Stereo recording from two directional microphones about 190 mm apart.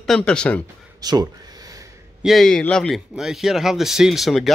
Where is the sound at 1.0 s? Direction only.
20° right (ahead or behind).